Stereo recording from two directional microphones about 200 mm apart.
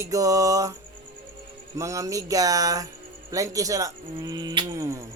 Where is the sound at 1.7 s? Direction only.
15° right (ahead or behind).